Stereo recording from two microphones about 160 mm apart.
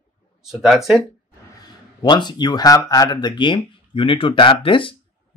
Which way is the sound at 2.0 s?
25° left (ahead or behind).